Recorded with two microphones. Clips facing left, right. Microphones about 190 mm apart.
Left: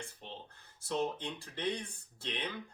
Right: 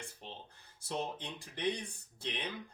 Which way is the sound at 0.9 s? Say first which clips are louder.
Left 4 dB; 15° right (ahead or behind).